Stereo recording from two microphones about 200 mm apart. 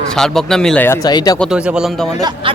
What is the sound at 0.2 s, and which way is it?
Speech, centre (ahead or behind).